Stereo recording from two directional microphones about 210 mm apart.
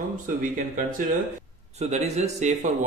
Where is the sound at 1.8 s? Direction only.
30° right (ahead or behind).